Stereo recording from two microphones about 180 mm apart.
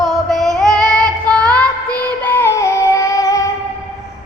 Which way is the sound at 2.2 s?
10° left (ahead or behind).